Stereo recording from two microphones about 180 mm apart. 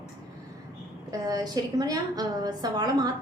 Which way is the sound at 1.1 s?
20° right (ahead or behind).